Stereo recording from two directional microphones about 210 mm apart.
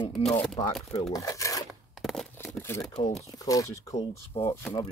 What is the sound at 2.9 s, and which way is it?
Speech, 30° left (ahead or behind).